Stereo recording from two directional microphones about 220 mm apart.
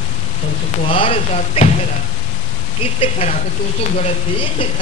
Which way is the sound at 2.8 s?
25° left (ahead or behind).